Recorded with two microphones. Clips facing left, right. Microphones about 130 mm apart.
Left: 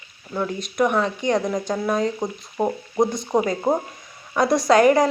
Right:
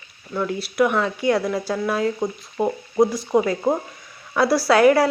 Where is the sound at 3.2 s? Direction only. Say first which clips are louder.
Right 1 dB; 15° left (ahead or behind).